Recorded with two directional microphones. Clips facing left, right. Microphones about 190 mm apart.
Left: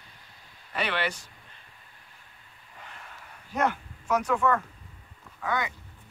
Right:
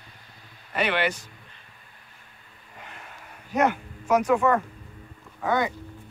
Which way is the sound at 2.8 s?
10° right (ahead or behind).